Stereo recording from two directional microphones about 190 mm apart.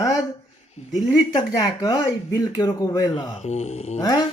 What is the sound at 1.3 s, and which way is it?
Speech, 20° left (ahead or behind).